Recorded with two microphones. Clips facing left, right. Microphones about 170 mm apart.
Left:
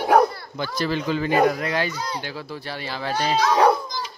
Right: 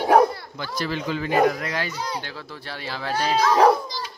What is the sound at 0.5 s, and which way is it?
Speech, 20° left (ahead or behind).